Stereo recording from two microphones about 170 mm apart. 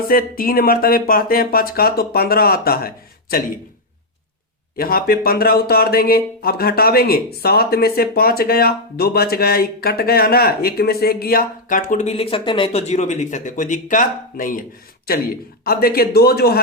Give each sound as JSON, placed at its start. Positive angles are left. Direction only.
{"t": 0.1, "sound": "speech", "side_deg": 60}
{"t": 4.8, "sound": "speech", "side_deg": 60}